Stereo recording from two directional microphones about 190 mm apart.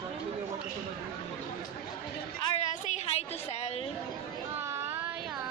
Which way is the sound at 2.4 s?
35° left (ahead or behind).